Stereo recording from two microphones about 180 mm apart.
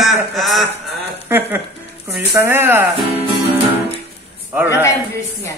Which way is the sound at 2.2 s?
10° right (ahead or behind).